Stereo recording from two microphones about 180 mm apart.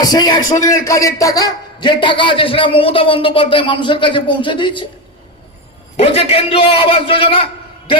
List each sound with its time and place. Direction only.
0.0 s a man's voice: 20° left (ahead or behind)
6.0 s a man's voice: 35° left (ahead or behind)